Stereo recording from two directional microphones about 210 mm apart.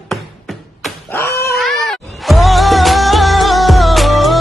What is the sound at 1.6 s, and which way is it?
Music, centre (ahead or behind).